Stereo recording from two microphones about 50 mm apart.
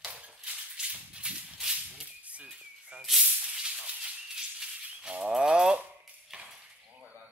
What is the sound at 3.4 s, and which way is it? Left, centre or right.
Rattle, centre.